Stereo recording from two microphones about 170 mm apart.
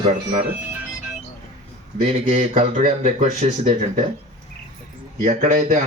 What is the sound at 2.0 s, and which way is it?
Speech, 45° right (ahead or behind).